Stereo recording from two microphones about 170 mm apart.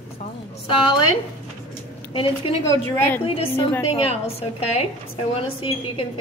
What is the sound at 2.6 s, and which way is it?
Speech, 10° left (ahead or behind).